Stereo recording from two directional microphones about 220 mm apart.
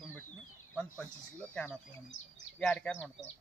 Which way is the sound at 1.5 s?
5° left (ahead or behind).